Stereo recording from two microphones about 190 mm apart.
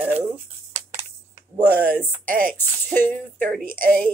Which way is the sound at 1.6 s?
10° left (ahead or behind).